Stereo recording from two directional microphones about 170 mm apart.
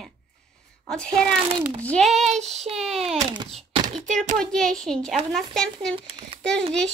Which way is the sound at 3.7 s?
30° right (ahead or behind).